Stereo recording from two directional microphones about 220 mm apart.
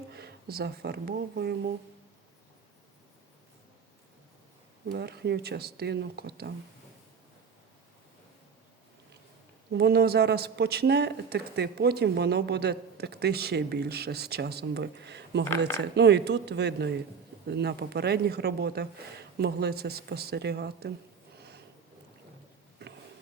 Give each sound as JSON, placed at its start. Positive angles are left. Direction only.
{"t": 0.1, "sound": "speech", "side_deg": -45}
{"t": 4.9, "sound": "speech", "side_deg": -50}
{"t": 9.7, "sound": "speech", "side_deg": -45}